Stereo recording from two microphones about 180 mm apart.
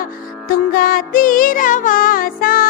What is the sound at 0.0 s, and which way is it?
Music, 55° left (ahead or behind).